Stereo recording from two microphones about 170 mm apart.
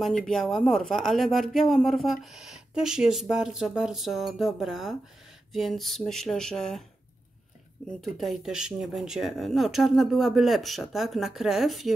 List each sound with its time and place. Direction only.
0.0 s speech: centre (ahead or behind)
8.0 s speech: centre (ahead or behind)